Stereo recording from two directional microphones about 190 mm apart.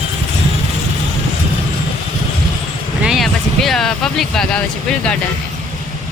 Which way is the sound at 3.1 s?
Centre (ahead or behind).